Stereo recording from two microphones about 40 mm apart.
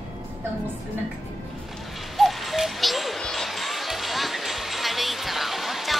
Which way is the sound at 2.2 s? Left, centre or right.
Centre.